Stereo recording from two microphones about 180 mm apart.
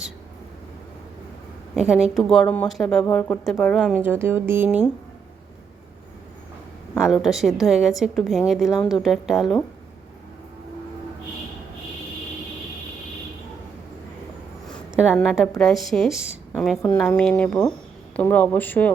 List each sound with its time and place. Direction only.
1.7 s a woman's voice: 5° right (ahead or behind)
4.0 s speech: 10° right (ahead or behind)
7.0 s a woman's voice: centre (ahead or behind)
14.7 s speech: centre (ahead or behind)
16.6 s a woman's voice: 5° left (ahead or behind)